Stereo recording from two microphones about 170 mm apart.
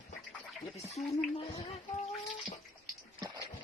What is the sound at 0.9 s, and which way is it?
Speech, 35° left (ahead or behind).